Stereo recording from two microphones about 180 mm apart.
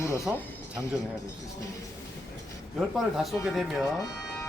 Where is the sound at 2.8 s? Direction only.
Centre (ahead or behind).